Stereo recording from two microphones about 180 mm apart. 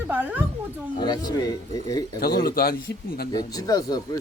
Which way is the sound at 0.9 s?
25° left (ahead or behind).